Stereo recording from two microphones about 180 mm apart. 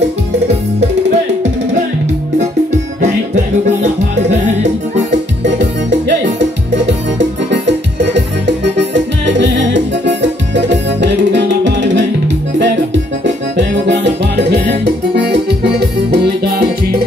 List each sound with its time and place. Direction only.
0.7 s music: 40° right (ahead or behind)
3.0 s music: 40° right (ahead or behind)
5.4 s keyboard: 80° right
6.9 s music: 80° right; by 17.0 s 60° right (ahead or behind)